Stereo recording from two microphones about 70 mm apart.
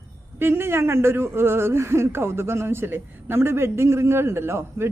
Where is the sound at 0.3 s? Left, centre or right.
Right.